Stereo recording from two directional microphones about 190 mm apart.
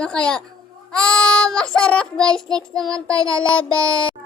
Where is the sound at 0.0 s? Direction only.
5° left (ahead or behind).